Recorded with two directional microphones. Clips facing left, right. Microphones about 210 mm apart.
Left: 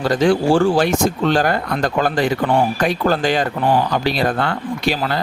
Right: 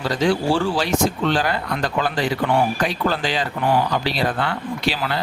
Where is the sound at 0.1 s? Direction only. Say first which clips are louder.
Left 5 dB; 50° left (ahead or behind).